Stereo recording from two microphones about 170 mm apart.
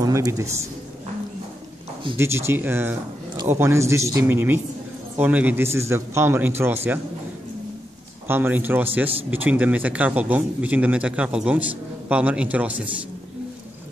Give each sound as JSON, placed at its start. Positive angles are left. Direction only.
{"t": 0.0, "sound": "speech", "side_deg": -20}
{"t": 2.1, "sound": "speech", "side_deg": -15}
{"t": 8.3, "sound": "speech", "side_deg": -10}